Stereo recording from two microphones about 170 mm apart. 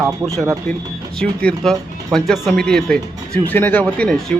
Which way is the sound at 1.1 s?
5° left (ahead or behind).